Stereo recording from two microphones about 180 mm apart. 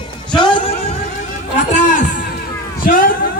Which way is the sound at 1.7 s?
45° left (ahead or behind).